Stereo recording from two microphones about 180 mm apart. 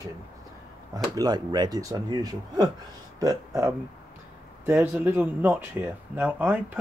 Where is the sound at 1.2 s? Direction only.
25° right (ahead or behind).